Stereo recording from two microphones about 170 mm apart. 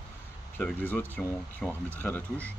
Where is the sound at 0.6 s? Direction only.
10° left (ahead or behind).